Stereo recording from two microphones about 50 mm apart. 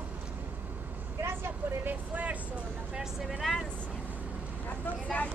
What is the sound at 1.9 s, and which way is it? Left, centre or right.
Vehicle, right.